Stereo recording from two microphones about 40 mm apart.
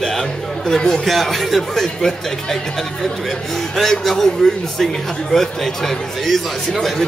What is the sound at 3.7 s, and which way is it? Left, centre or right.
Speech, centre.